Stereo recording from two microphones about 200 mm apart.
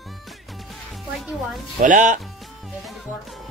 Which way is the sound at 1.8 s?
40° right (ahead or behind).